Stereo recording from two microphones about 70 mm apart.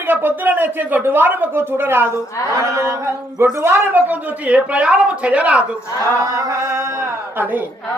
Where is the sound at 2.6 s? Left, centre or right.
Right.